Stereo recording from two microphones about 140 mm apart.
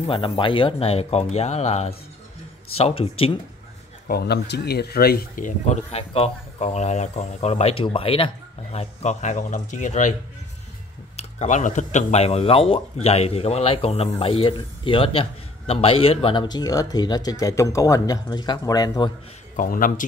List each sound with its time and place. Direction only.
0.0 s speech: 40° left (ahead or behind)
4.1 s speech: 90° left; by 5.8 s 75° left (ahead or behind)
5.9 s speech: 45° left (ahead or behind)
8.7 s speech: 55° left (ahead or behind)
11.1 s speech: 55° left (ahead or behind); by 19.1 s 30° left (ahead or behind)
19.5 s a man's voice: 75° left (ahead or behind)